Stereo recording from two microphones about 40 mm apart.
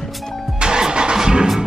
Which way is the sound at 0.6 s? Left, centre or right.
Right.